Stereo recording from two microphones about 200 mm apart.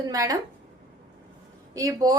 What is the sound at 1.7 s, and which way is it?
Speech, 15° right (ahead or behind).